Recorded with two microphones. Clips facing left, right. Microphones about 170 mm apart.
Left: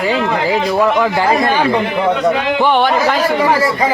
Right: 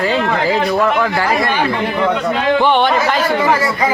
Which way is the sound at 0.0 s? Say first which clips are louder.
Even; 15° left (ahead or behind).